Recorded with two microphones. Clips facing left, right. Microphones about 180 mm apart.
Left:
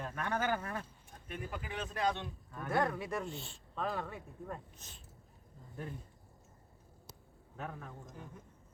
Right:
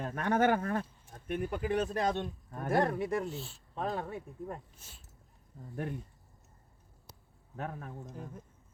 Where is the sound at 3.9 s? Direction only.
25° right (ahead or behind).